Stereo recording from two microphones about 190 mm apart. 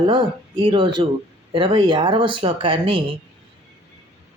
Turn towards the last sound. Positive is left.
turn(degrees=-25)  # may be behind; listen again after turning